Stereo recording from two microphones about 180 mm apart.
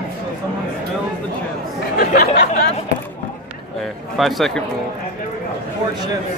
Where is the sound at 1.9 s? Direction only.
60° left (ahead or behind).